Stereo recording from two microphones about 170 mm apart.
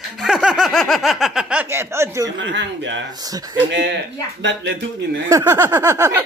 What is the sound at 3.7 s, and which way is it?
Speech, 90° right.